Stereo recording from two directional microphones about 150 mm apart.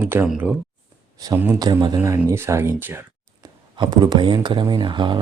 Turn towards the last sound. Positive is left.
turn(degrees=-30)  # may be behind; listen again after turning